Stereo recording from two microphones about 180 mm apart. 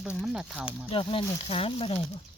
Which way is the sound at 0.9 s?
30° left (ahead or behind).